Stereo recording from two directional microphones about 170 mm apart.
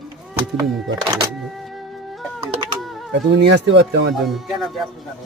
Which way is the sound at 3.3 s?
90° right.